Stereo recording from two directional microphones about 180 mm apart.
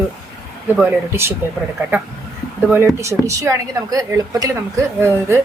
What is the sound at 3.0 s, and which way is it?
Speech, 15° right (ahead or behind).